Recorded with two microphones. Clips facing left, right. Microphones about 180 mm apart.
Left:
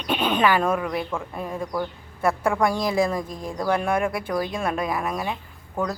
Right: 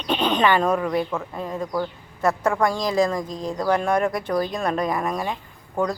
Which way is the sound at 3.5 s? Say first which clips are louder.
Right 2 dB; 10° left (ahead or behind).